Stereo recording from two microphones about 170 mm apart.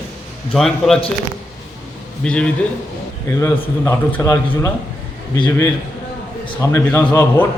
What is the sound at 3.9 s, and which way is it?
Speech, 15° left (ahead or behind).